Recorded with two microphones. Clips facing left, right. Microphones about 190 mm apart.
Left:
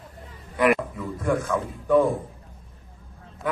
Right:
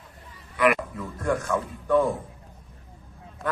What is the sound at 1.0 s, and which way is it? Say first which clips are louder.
A man's voice: left 2 dB; 5° left (ahead or behind).